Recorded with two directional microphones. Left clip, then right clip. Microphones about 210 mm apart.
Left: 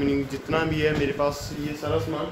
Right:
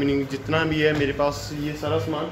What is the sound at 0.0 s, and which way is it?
Speech, 5° left (ahead or behind).